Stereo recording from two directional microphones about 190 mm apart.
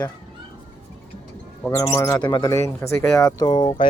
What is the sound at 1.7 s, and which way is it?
Speech, 20° left (ahead or behind).